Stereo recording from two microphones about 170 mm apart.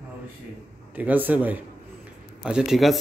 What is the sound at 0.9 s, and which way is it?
A man's voice, 10° right (ahead or behind).